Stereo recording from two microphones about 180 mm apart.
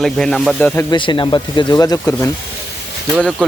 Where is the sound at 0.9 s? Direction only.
25° left (ahead or behind).